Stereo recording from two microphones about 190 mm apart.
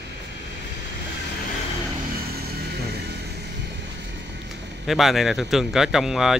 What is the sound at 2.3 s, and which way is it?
Vehicle, 55° right (ahead or behind).